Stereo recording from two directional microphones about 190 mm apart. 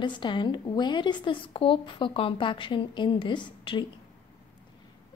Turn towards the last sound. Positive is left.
turn(degrees=25)  # may be behind; listen again after turning